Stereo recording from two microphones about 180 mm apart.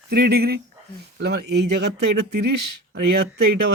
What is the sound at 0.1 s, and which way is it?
Speech, 60° right (ahead or behind).